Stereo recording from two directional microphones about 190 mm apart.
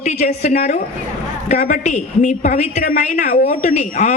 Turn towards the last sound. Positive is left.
turn(degrees=40)  # may be behind; listen again after turning